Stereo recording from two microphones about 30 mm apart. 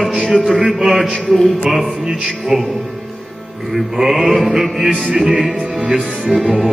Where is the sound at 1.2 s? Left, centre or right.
Centre.